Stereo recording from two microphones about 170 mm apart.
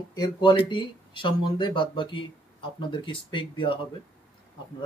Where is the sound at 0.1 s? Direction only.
25° left (ahead or behind).